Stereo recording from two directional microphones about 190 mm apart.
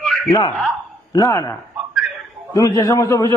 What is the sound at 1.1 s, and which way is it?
Speech, 20° left (ahead or behind).